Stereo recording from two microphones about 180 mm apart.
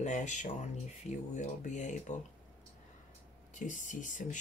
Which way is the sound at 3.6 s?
45° left (ahead or behind).